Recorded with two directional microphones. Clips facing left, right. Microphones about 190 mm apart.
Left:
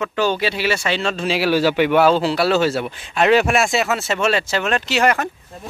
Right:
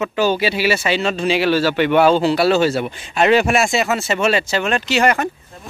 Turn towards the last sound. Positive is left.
turn(degrees=0)  # may be behind; listen again after turning